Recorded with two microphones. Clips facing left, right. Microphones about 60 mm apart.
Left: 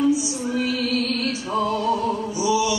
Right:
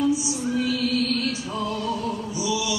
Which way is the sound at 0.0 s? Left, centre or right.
Left.